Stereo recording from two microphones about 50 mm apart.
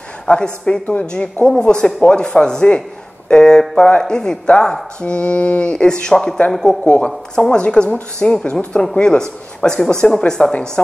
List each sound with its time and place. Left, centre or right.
0.3 s speech: centre